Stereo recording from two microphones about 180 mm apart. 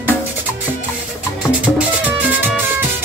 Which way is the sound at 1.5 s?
5° right (ahead or behind).